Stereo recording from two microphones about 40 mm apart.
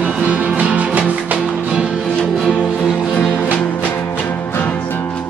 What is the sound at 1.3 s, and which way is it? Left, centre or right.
Music, right.